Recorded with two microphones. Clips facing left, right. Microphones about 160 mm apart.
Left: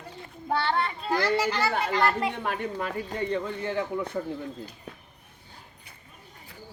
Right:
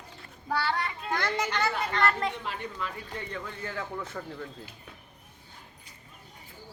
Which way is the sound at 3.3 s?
25° left (ahead or behind).